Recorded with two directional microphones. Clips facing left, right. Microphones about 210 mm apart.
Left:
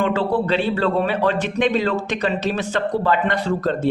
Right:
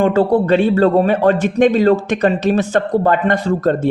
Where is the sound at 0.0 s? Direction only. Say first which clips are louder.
Right 6 dB; 45° right (ahead or behind).